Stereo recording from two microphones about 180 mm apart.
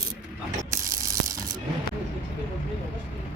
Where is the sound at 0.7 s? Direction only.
20° right (ahead or behind).